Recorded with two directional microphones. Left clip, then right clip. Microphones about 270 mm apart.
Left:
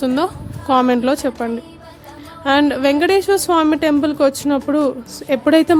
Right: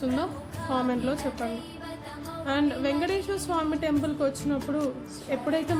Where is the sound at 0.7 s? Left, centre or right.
Left.